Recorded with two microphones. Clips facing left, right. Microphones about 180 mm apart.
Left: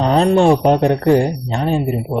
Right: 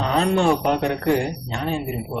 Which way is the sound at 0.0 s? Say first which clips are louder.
Left 7 dB; 35° left (ahead or behind).